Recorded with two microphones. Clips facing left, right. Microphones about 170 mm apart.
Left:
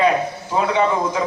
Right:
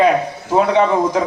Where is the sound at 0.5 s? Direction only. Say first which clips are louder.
Right 5 dB; 30° right (ahead or behind).